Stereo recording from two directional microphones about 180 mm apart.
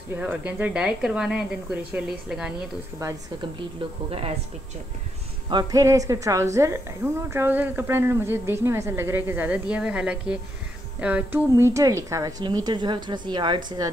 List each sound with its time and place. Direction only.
0.1 s a woman's voice: 10° right (ahead or behind)
5.5 s a woman's voice: 20° right (ahead or behind)